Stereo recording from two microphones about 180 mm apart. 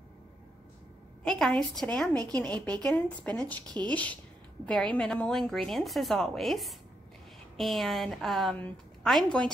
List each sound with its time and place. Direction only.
1.2 s a woman's voice: 5° left (ahead or behind)
3.6 s speech: 25° right (ahead or behind)
3.9 s a woman's voice: 10° left (ahead or behind)